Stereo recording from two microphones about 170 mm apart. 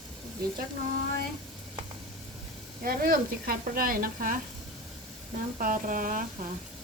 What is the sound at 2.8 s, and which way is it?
Speech, 55° right (ahead or behind).